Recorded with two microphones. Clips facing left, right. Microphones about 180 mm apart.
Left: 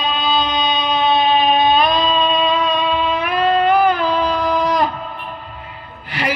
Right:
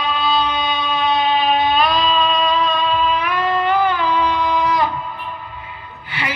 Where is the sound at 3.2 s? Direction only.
45° left (ahead or behind).